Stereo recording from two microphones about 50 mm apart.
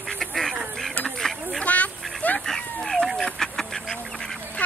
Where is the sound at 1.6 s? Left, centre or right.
Left.